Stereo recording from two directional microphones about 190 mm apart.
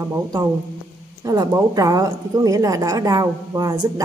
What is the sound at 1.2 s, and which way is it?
A woman's voice, 20° right (ahead or behind).